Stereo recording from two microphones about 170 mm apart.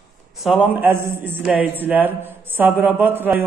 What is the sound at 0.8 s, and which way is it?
A man's voice, 15° right (ahead or behind).